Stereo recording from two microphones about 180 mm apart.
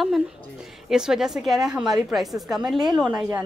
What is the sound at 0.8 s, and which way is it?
A woman's voice, 5° right (ahead or behind).